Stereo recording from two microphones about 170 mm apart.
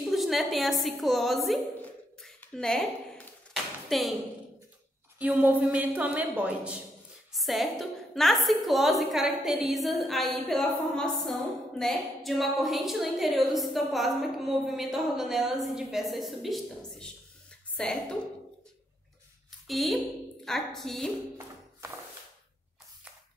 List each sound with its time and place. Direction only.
0.0 s a woman's voice: centre (ahead or behind)
3.9 s a woman's voice: centre (ahead or behind)
5.2 s a woman's voice: 10° right (ahead or behind)
19.7 s a woman's voice: centre (ahead or behind)